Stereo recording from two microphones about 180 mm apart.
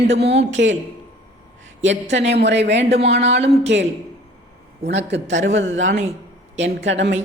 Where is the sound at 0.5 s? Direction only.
90° right.